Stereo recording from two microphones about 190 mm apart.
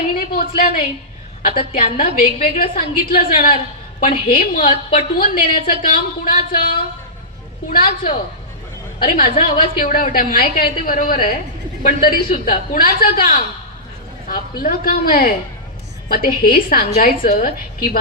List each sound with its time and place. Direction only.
0.2 s a sound: 50° left (ahead or behind)
1.5 s a woman's voice: 50° left (ahead or behind)
7.7 s a woman's voice: 50° left (ahead or behind)